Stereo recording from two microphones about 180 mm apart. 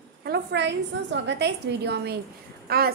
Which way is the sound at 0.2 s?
70° right (ahead or behind).